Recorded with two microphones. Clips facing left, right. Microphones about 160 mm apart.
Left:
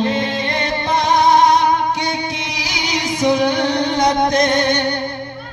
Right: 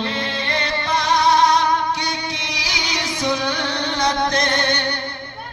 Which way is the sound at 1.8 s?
50° left (ahead or behind).